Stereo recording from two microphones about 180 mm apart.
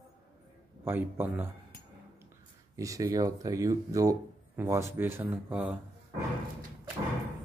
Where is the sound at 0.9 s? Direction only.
10° right (ahead or behind).